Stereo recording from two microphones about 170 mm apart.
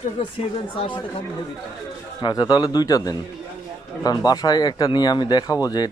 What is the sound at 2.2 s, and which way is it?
Speech, 25° left (ahead or behind).